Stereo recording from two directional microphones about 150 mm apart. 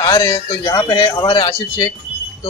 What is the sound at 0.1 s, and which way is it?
A man's voice, 25° left (ahead or behind).